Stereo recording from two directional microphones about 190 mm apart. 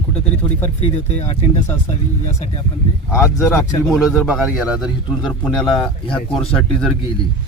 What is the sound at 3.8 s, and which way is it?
Speech, centre (ahead or behind).